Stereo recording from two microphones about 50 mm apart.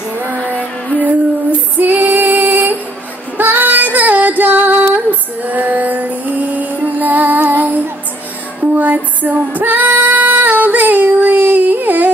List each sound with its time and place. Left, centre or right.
0.4 s music: left
1.8 s female singing: right